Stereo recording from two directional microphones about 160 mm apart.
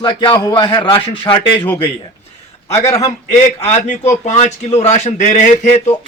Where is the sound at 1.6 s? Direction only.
15° left (ahead or behind).